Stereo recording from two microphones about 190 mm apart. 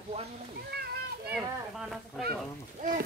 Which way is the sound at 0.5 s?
55° right (ahead or behind).